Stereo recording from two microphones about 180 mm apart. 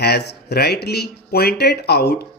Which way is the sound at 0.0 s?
65° left (ahead or behind).